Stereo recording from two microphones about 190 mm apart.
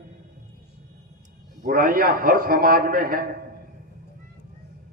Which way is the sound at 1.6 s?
50° right (ahead or behind).